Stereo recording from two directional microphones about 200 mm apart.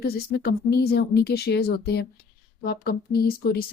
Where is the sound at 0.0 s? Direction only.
50° left (ahead or behind).